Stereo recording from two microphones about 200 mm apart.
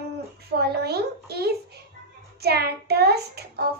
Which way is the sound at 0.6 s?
50° right (ahead or behind).